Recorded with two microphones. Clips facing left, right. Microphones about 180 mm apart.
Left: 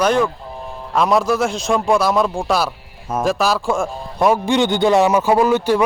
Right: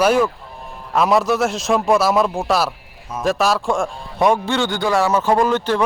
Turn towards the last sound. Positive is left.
turn(degrees=10)  # may be behind; listen again after turning